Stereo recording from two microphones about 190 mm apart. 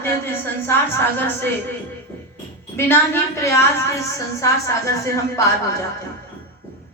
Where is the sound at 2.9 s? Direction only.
15° left (ahead or behind).